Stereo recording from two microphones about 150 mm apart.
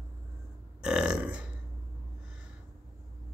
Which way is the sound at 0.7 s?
5° right (ahead or behind).